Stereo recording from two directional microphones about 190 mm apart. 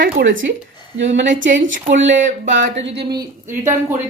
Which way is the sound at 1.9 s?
75° right (ahead or behind).